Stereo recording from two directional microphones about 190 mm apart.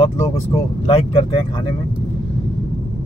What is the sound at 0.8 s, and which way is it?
Speech, 25° left (ahead or behind).